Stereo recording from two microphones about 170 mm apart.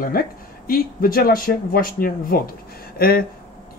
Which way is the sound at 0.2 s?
60° left (ahead or behind).